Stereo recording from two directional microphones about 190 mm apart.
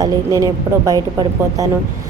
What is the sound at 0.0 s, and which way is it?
Speech, 20° right (ahead or behind).